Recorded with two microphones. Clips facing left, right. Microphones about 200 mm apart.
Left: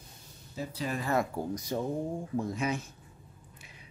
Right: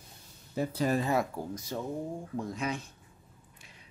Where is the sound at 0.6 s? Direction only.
45° right (ahead or behind).